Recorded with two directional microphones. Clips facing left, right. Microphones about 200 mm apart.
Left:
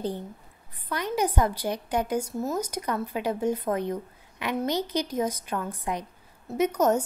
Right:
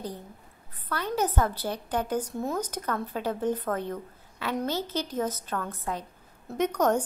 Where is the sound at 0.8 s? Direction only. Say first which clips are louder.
Left 1 dB; 15° left (ahead or behind).